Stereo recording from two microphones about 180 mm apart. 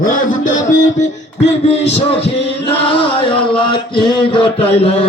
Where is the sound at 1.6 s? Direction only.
35° left (ahead or behind).